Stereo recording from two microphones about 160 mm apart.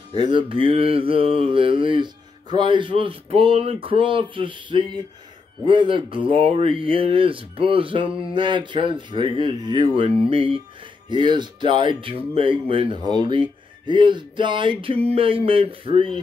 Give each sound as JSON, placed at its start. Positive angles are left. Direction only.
{"t": 0.2, "sound": "speech", "side_deg": -30}